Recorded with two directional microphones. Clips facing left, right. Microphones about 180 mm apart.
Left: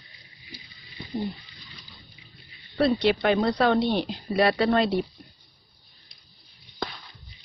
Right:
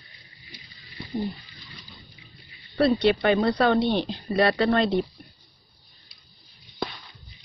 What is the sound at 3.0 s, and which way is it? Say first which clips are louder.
Speech: right 1 dB; centre (ahead or behind).